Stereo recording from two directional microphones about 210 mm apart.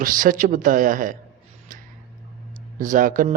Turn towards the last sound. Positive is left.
turn(degrees=-40)  # may be behind; listen again after turning